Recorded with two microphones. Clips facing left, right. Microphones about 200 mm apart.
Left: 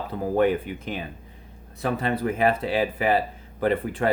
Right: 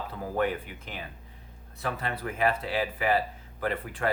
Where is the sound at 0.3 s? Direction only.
20° left (ahead or behind).